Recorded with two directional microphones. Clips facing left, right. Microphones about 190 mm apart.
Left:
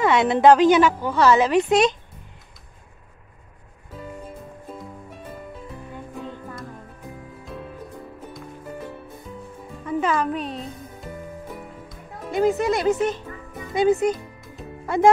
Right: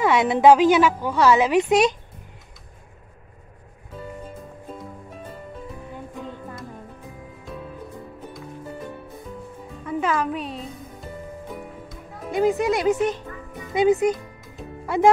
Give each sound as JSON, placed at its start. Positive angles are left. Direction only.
{"t": 0.0, "sound": "a woman's voice", "side_deg": -10}
{"t": 9.8, "sound": "music", "side_deg": -5}
{"t": 12.3, "sound": "a woman's voice", "side_deg": -10}
{"t": 14.1, "sound": "music", "side_deg": 0}